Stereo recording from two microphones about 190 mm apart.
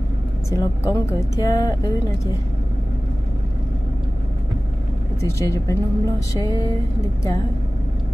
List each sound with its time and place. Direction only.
0.5 s speech: 20° left (ahead or behind)
5.2 s speech: 15° left (ahead or behind)